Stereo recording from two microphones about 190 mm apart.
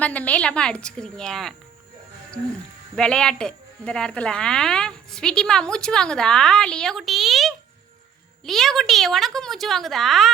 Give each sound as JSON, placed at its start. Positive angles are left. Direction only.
{"t": 0.0, "sound": "speech", "side_deg": 10}
{"t": 2.9, "sound": "speech", "side_deg": 5}